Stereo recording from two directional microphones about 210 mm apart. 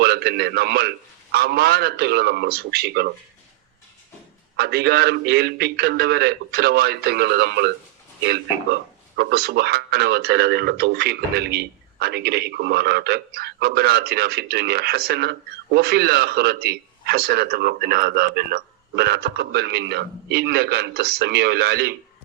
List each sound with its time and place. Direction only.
0.0 s speech: 50° right (ahead or behind)
4.5 s speech: 50° right (ahead or behind)